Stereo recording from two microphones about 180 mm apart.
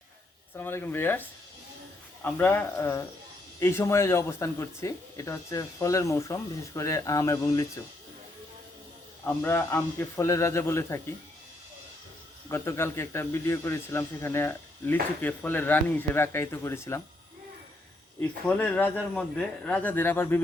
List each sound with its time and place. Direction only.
0.5 s a man's voice: 10° left (ahead or behind)
9.2 s a man's voice: 15° left (ahead or behind)
12.5 s a man's voice: 15° left (ahead or behind)
18.2 s a man's voice: 10° left (ahead or behind)